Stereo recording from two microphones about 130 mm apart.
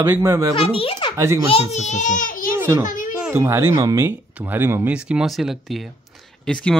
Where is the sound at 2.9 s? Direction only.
90° left.